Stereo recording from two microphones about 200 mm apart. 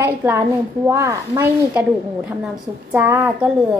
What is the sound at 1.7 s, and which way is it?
A woman's voice, 5° right (ahead or behind).